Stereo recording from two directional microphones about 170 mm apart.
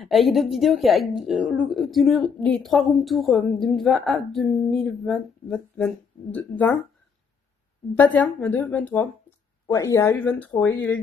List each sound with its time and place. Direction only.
0.0 s speech: centre (ahead or behind)
7.9 s speech: 10° left (ahead or behind)